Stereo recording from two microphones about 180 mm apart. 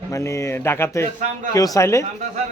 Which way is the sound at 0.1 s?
15° left (ahead or behind).